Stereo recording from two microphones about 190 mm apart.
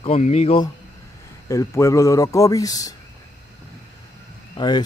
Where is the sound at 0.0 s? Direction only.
35° left (ahead or behind).